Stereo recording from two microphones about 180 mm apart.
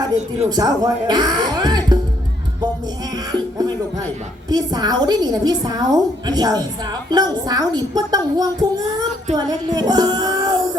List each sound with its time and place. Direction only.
0.5 s a woman's voice: 25° right (ahead or behind)
4.4 s a woman's voice: 20° right (ahead or behind)